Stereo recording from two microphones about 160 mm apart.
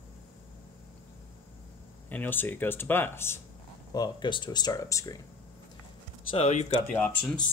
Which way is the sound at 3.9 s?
25° left (ahead or behind).